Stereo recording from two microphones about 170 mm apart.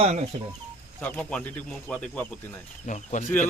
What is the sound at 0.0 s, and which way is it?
Speech, 40° right (ahead or behind).